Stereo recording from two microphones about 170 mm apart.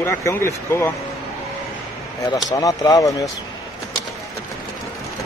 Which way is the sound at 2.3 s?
20° left (ahead or behind).